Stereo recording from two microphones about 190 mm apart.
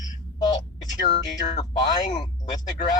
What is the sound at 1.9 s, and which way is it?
Speech, 20° left (ahead or behind).